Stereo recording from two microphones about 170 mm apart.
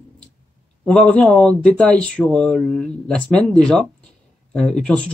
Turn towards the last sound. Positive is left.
turn(degrees=5)  # may be behind; listen again after turning